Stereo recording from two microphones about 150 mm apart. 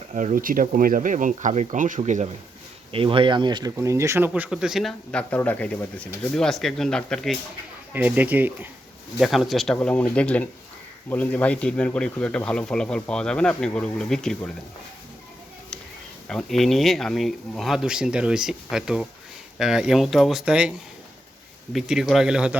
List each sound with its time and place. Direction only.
0.1 s speech: 55° right (ahead or behind)
2.9 s speech: 35° right (ahead or behind); by 4.4 s 15° right (ahead or behind)
4.4 s speech: 5° right (ahead or behind)
7.9 s speech: 10° right (ahead or behind)
9.1 s speech: centre (ahead or behind)
16.3 s speech: 5° left (ahead or behind)